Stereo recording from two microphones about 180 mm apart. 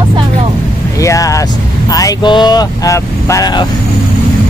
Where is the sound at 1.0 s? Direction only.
20° left (ahead or behind).